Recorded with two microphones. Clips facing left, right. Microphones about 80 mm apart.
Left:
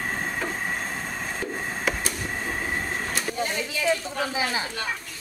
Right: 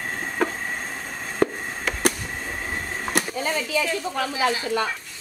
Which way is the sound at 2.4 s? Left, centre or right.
Centre.